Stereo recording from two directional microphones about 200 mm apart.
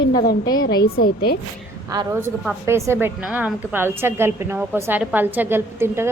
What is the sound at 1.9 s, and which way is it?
A woman's voice, 15° right (ahead or behind).